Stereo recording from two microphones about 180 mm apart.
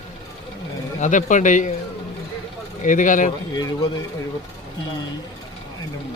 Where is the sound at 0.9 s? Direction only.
45° left (ahead or behind).